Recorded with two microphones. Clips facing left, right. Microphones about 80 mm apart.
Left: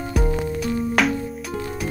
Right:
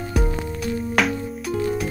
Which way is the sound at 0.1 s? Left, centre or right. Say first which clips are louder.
Left 3 dB; centre.